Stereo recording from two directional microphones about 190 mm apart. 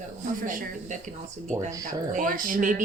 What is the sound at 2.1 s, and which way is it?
Speech, 45° right (ahead or behind).